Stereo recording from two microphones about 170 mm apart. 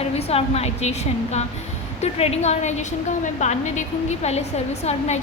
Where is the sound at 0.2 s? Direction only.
35° left (ahead or behind).